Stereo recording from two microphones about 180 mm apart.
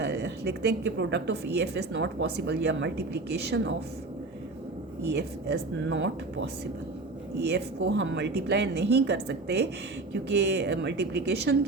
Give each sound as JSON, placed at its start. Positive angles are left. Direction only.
{"t": 0.0, "sound": "a woman's voice", "side_deg": -65}
{"t": 5.1, "sound": "a woman's voice", "side_deg": -75}
{"t": 7.3, "sound": "a woman's voice", "side_deg": -70}